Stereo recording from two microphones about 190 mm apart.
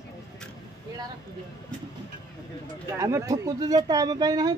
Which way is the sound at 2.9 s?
15° right (ahead or behind).